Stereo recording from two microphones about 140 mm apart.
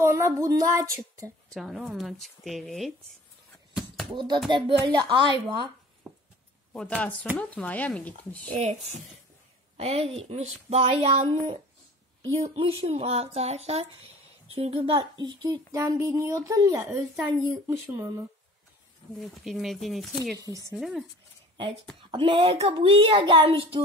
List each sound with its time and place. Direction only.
0.0 s female singing: 20° right (ahead or behind)
1.5 s speech: centre (ahead or behind)
3.7 s basketball bounce: centre (ahead or behind)
4.1 s a child's voice: 35° right (ahead or behind)
7.3 s speech: 10° left (ahead or behind)
9.8 s speech: 45° right (ahead or behind); by 11.5 s 60° right (ahead or behind)
12.4 s speech: 45° right (ahead or behind); by 18.2 s 15° right (ahead or behind)
19.1 s speech: centre (ahead or behind)
20.3 s speech: 25° right (ahead or behind)
20.7 s speech: centre (ahead or behind)
22.1 s a child's voice: 40° right (ahead or behind)